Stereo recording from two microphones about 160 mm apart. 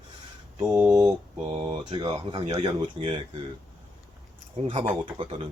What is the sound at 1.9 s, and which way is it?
Speech, 30° right (ahead or behind).